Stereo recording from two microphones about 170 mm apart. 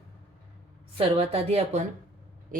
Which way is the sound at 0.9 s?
35° right (ahead or behind).